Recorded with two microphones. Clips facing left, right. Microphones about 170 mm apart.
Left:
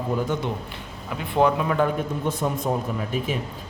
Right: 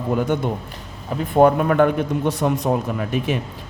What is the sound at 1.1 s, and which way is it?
A man's voice, 45° right (ahead or behind).